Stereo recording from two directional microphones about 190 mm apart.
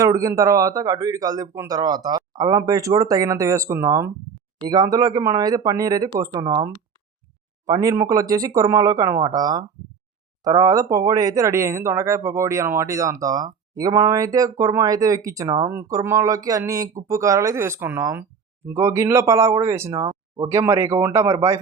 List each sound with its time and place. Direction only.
0.0 s speech: 15° right (ahead or behind)